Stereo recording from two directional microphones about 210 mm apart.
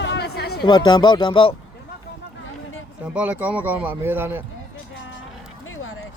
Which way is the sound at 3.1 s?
5° right (ahead or behind).